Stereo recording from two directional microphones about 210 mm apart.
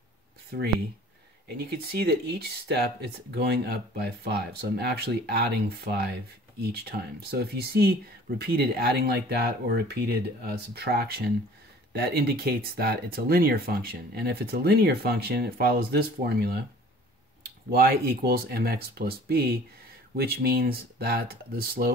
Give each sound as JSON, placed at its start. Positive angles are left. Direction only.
{"t": 1.6, "sound": "speech", "side_deg": -50}
{"t": 17.6, "sound": "speech", "side_deg": -45}